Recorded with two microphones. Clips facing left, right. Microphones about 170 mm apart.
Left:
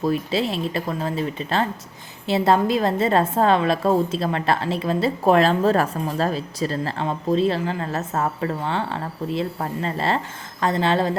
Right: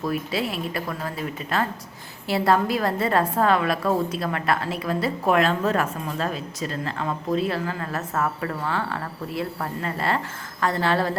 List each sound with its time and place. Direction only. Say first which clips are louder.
0.0 s a woman's voice: left 4 dB; 25° left (ahead or behind)